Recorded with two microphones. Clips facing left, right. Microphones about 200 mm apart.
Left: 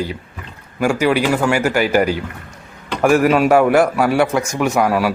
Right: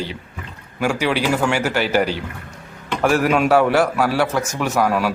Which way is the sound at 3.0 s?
10° left (ahead or behind).